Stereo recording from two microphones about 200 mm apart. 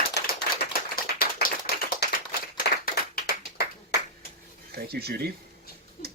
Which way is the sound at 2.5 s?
50° left (ahead or behind).